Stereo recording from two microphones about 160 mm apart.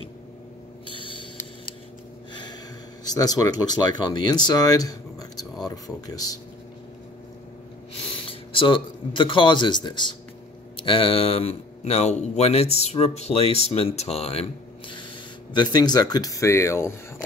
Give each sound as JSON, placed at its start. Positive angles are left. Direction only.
{"t": 0.8, "sound": "a sound", "side_deg": 35}
{"t": 3.1, "sound": "speech", "side_deg": 25}
{"t": 8.1, "sound": "speech", "side_deg": 35}